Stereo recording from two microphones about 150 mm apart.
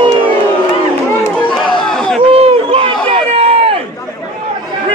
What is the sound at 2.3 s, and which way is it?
Run, 40° right (ahead or behind).